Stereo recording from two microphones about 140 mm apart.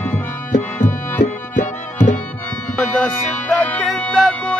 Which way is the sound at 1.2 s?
65° left (ahead or behind).